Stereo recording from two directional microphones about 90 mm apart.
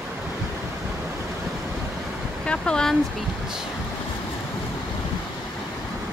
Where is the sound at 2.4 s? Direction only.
10° left (ahead or behind).